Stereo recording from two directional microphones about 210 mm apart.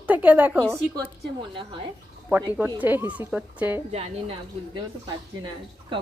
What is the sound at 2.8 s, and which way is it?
Speech, 10° right (ahead or behind).